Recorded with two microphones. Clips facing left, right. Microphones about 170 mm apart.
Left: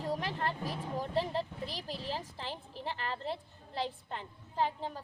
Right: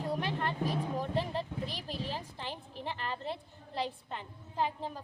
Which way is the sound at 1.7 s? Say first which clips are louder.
Even; 35° left (ahead or behind).